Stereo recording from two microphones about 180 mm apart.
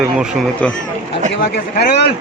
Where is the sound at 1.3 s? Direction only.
65° left (ahead or behind).